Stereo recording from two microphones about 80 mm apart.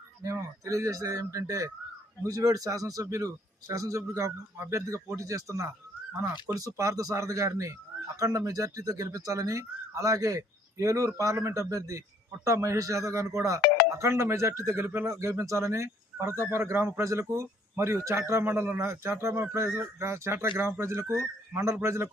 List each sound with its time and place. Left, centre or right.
0.2 s a man's voice: right